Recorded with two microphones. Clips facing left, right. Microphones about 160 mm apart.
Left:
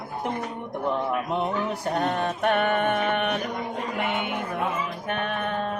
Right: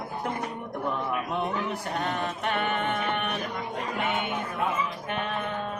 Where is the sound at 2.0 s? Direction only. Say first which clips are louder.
Left 6 dB; 50° left (ahead or behind).